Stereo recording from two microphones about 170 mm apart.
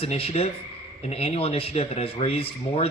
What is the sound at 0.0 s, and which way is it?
Speech, 35° left (ahead or behind).